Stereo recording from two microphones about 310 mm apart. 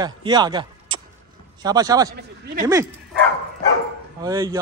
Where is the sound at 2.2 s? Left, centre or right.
Right.